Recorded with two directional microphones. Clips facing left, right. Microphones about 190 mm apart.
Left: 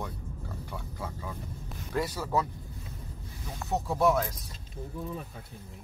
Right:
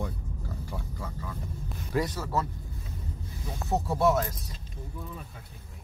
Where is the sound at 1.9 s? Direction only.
10° left (ahead or behind).